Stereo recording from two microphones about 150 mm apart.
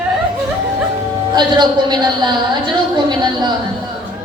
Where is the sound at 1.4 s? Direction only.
30° right (ahead or behind).